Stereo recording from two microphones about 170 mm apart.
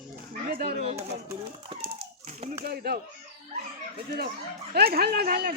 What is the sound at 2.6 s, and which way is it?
Speech, 65° right (ahead or behind).